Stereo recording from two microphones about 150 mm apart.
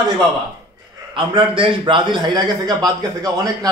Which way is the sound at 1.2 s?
35° right (ahead or behind).